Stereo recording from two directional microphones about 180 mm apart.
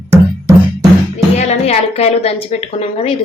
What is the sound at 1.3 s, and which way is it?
A woman's voice, 35° left (ahead or behind).